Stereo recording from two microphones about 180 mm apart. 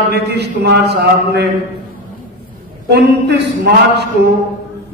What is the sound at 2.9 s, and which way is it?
A man's voice, 65° right (ahead or behind).